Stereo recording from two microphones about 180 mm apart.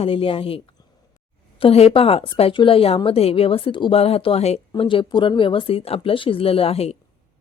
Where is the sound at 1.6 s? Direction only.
35° left (ahead or behind).